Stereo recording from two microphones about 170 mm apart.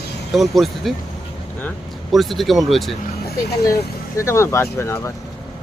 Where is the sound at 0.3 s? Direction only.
Centre (ahead or behind).